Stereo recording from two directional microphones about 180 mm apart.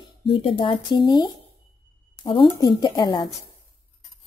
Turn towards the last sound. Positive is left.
turn(degrees=25)  # may be behind; listen again after turning